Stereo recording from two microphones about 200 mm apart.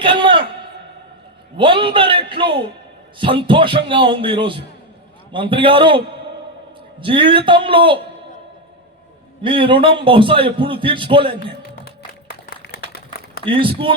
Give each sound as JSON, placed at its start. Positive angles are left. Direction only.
{"t": 0.0, "sound": "a sound", "side_deg": -25}
{"t": 1.5, "sound": "a man's voice", "side_deg": -25}
{"t": 7.0, "sound": "a man's voice", "side_deg": -25}
{"t": 9.4, "sound": "a man's voice", "side_deg": -25}
{"t": 11.9, "sound": "a sound", "side_deg": 50}
{"t": 13.4, "sound": "a man's voice", "side_deg": -25}